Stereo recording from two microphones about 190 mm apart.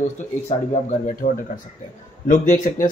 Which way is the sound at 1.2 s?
45° left (ahead or behind).